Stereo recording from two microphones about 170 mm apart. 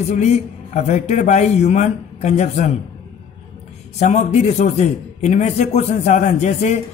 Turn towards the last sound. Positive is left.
turn(degrees=45)  # may be behind; listen again after turning